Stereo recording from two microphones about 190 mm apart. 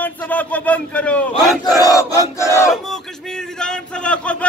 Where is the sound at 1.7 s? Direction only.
20° left (ahead or behind).